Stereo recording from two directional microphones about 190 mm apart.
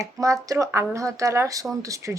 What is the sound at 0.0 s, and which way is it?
A woman's voice, 15° right (ahead or behind).